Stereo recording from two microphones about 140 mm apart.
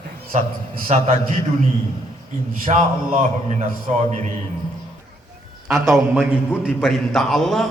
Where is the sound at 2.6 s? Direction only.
65° right (ahead or behind).